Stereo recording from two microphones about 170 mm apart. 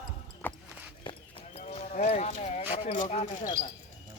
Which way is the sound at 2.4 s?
40° left (ahead or behind).